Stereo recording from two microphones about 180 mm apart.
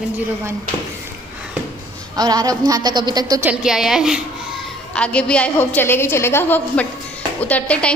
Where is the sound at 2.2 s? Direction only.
20° right (ahead or behind).